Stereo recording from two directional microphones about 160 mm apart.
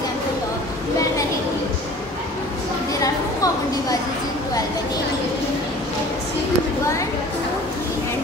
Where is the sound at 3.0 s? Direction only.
20° left (ahead or behind).